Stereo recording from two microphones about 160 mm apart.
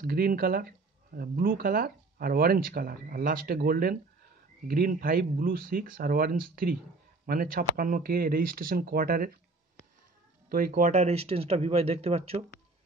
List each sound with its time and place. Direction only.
0.0 s speech: 65° right (ahead or behind)
10.5 s speech: 60° right (ahead or behind); by 12.4 s 40° right (ahead or behind)